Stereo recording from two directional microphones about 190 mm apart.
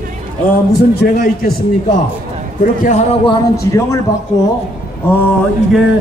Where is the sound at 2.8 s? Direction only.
40° left (ahead or behind).